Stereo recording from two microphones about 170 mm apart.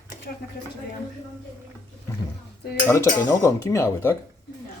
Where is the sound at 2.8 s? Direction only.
15° left (ahead or behind).